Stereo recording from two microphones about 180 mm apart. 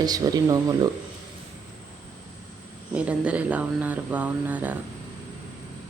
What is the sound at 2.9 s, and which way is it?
Speech, 5° right (ahead or behind).